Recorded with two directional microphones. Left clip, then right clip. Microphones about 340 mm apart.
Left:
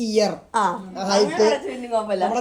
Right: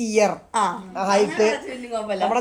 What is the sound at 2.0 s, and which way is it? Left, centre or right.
Speech, right.